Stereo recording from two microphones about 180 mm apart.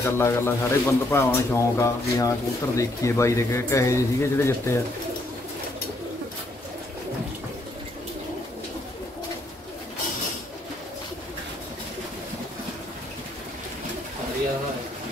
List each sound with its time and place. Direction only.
0.0 s a man's voice: 15° left (ahead or behind)